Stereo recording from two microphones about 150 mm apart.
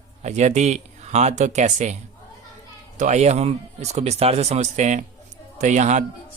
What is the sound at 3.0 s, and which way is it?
Speech, 50° right (ahead or behind).